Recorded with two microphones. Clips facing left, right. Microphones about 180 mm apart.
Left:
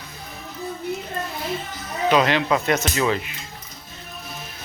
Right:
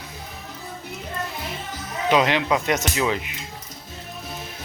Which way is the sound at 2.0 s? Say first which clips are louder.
Left 1 dB; 20° right (ahead or behind).